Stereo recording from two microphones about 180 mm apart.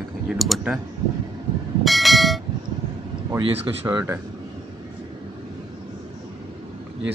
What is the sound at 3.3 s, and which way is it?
Speech, 25° right (ahead or behind).